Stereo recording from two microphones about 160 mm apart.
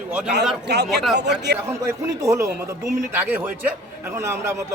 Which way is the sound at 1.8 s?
20° right (ahead or behind).